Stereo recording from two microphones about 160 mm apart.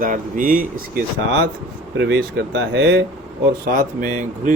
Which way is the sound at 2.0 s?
90° right.